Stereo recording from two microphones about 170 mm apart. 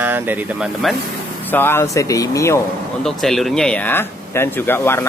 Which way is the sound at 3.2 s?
Centre (ahead or behind).